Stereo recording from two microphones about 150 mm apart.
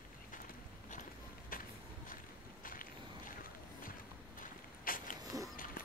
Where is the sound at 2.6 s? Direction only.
65° left (ahead or behind).